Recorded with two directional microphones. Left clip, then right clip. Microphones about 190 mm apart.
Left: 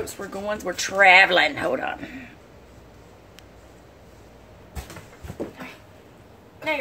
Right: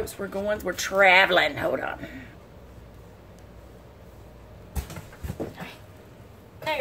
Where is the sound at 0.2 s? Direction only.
20° left (ahead or behind).